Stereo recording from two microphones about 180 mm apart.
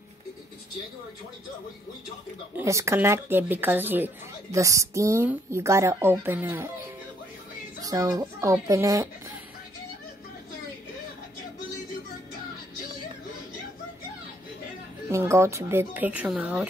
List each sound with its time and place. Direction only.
2.5 s speech: 15° right (ahead or behind)
15.0 s speech: 15° right (ahead or behind)